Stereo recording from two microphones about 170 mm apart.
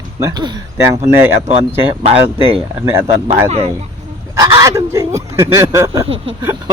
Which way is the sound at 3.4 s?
40° right (ahead or behind).